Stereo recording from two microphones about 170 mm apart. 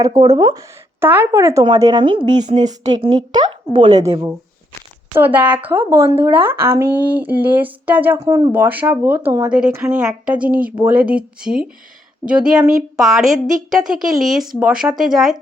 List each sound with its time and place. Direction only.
0.0 s a woman's voice: 20° right (ahead or behind); by 13.3 s centre (ahead or behind)
14.3 s a woman's voice: 5° right (ahead or behind)